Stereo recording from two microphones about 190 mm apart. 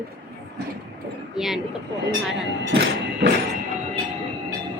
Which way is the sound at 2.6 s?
60° right (ahead or behind).